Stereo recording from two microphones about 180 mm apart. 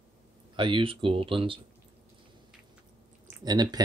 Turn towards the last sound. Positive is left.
turn(degrees=-20)  # may be behind; listen again after turning